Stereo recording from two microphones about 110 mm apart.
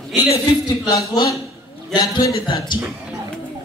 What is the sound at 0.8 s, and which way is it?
A man's voice, 35° left (ahead or behind).